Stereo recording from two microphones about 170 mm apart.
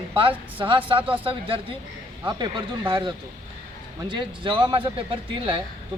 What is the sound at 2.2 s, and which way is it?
Speech, 25° right (ahead or behind).